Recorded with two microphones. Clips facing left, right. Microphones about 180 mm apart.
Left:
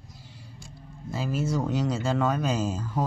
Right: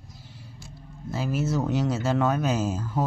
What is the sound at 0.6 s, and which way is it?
Speech, 5° right (ahead or behind).